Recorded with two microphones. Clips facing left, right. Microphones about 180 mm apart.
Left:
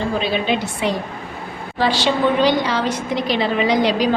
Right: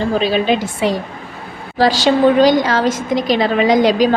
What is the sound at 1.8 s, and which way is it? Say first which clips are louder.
A woman's voice: right 6 dB; 40° right (ahead or behind).